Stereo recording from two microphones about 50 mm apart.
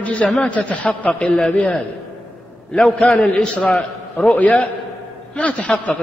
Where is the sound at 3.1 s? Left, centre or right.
Left.